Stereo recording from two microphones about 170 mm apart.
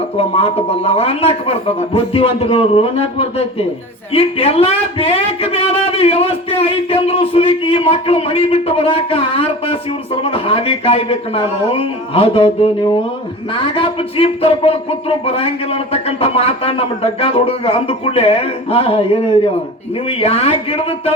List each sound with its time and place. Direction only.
0.2 s speech: 35° left (ahead or behind)
13.5 s speech: 30° left (ahead or behind)